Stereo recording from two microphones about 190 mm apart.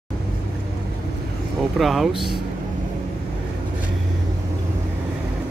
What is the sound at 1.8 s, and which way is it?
Speech, centre (ahead or behind).